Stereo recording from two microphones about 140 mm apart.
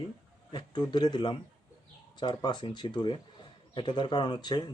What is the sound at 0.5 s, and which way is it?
Speech, 30° left (ahead or behind).